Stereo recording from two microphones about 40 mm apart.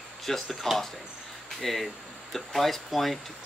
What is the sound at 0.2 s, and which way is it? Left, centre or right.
Speech, centre.